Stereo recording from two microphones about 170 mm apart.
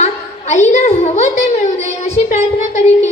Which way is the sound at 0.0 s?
45° left (ahead or behind).